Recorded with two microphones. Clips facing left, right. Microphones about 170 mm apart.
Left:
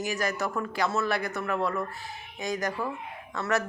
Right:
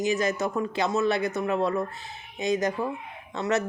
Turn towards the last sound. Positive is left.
turn(degrees=-20)  # may be behind; listen again after turning